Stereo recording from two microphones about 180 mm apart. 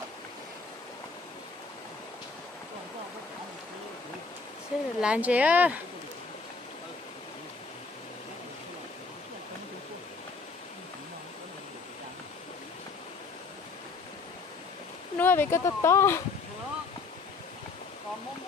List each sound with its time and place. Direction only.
4.7 s speech: 5° right (ahead or behind)
15.1 s speech: 10° left (ahead or behind)